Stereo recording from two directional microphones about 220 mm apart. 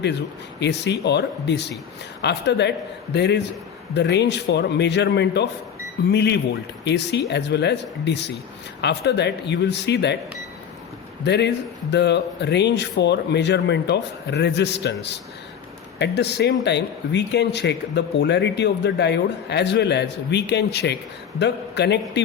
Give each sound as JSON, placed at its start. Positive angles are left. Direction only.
{"t": 0.6, "sound": "speech", "side_deg": 50}
{"t": 11.2, "sound": "speech", "side_deg": 50}